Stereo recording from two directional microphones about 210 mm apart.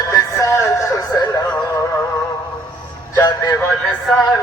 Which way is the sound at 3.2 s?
15° left (ahead or behind).